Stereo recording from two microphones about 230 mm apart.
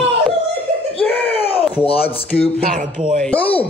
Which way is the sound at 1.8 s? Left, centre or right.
Left.